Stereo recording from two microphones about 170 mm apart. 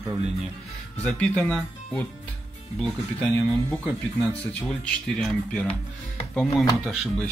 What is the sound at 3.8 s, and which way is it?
Speech, 5° left (ahead or behind).